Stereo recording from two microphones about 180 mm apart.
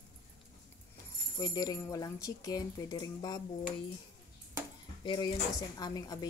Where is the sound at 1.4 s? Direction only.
20° left (ahead or behind).